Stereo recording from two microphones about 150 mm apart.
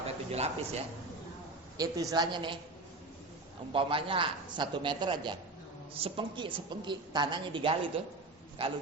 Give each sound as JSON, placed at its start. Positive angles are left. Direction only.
{"t": 0.3, "sound": "speech", "side_deg": -45}
{"t": 1.8, "sound": "a woman's voice", "side_deg": -25}
{"t": 3.7, "sound": "a woman's voice", "side_deg": -35}